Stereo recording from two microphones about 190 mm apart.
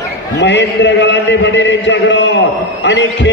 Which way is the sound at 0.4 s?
70° left (ahead or behind).